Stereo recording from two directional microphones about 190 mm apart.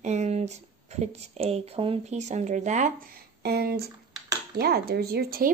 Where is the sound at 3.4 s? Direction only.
55° right (ahead or behind).